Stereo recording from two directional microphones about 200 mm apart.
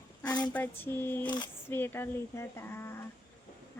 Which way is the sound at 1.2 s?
20° left (ahead or behind).